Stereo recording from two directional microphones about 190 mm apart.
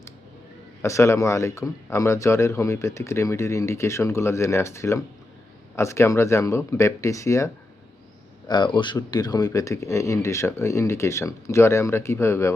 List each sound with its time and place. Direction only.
0.8 s a man's voice: 15° left (ahead or behind)